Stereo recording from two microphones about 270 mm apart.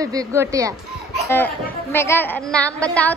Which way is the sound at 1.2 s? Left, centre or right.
Centre.